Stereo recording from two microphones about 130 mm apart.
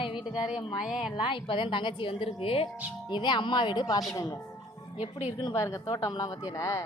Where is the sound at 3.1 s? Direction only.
35° left (ahead or behind).